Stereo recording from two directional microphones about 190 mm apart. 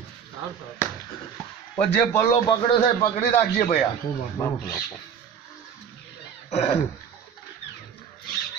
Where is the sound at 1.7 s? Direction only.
15° left (ahead or behind).